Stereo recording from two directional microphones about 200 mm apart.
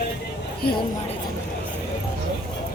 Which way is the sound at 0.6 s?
50° left (ahead or behind).